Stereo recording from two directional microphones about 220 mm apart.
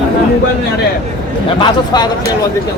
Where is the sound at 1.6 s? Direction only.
20° left (ahead or behind).